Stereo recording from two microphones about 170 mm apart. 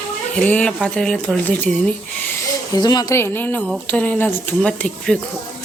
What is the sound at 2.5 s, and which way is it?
A woman's voice, 25° left (ahead or behind).